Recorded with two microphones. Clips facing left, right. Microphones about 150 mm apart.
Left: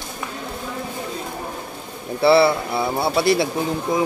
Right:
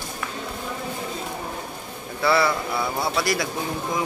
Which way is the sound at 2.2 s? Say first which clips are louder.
Left 6 dB; 30° left (ahead or behind).